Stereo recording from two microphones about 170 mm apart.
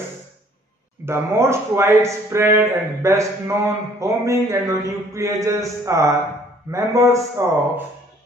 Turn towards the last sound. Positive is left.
turn(degrees=-15)  # may be behind; listen again after turning